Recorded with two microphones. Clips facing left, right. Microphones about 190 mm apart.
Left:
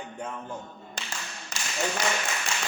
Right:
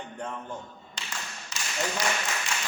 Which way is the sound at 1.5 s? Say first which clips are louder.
Left 1 dB; 50° left (ahead or behind).